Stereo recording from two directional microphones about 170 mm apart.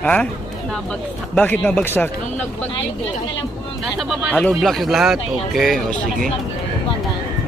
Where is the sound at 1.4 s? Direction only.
10° left (ahead or behind).